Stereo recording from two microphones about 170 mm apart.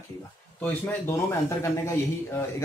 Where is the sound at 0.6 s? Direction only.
10° left (ahead or behind).